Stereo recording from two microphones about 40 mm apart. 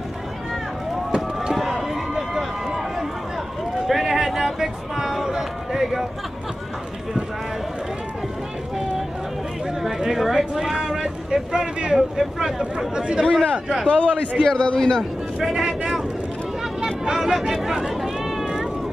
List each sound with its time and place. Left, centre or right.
1.1 s a sound: centre
1.6 s run: centre
3.8 s a sound: centre
9.8 s a sound: centre
10.7 s speech: centre
13.3 s a man's voice: centre
13.8 s a man's voice: left
14.4 s a man's voice: centre
15.4 s speech: centre
17.0 s cat: centre